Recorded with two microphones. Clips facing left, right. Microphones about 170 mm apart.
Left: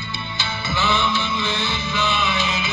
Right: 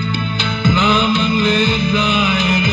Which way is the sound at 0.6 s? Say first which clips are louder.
Right 8 dB; 55° right (ahead or behind).